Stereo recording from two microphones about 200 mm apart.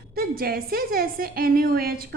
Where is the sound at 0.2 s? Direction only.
50° right (ahead or behind).